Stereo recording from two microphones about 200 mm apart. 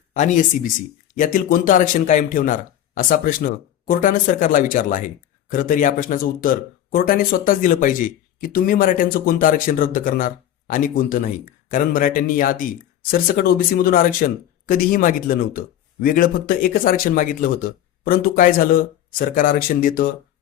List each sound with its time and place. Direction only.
0.1 s a man's voice: 40° left (ahead or behind)